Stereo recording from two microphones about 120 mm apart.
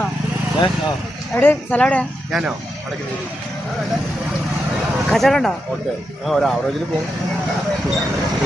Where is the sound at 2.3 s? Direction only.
5° right (ahead or behind).